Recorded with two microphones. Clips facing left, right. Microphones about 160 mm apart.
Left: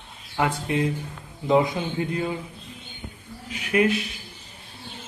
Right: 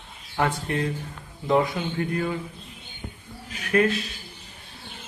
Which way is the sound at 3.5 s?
15° left (ahead or behind).